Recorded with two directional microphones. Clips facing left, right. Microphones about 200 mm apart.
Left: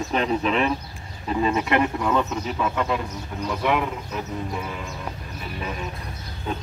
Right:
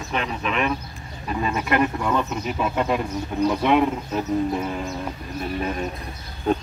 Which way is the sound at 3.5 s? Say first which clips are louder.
Right 4 dB; 25° right (ahead or behind).